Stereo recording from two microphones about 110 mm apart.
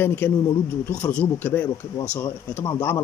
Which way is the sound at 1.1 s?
15° left (ahead or behind).